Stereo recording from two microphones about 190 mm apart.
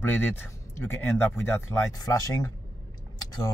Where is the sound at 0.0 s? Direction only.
10° left (ahead or behind).